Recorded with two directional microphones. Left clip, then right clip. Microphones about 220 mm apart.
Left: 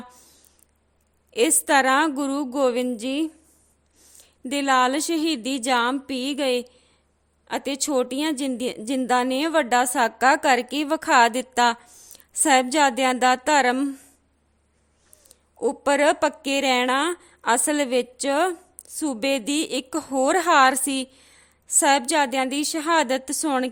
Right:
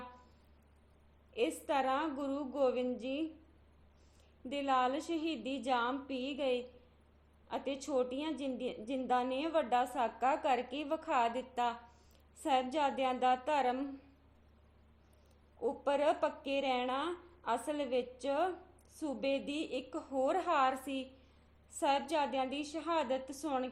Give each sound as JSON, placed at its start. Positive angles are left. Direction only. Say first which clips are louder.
{"t": 1.3, "sound": "a woman's voice", "louder": "left 15 dB", "side_deg": 50}
{"t": 15.6, "sound": "a woman's voice", "louder": "left 13 dB", "side_deg": 50}